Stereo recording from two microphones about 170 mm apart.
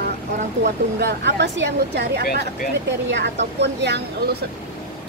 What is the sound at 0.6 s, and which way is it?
Speech, 80° right.